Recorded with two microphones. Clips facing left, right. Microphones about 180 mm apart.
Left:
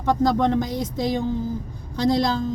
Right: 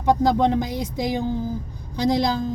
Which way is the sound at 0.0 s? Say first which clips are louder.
Right 1 dB; 15° right (ahead or behind).